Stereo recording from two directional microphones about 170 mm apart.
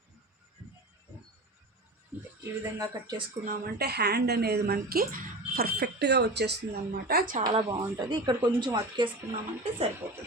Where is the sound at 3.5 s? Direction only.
65° right (ahead or behind).